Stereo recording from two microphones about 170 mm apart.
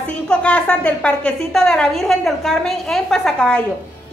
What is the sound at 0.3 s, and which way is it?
A woman's voice, 5° left (ahead or behind).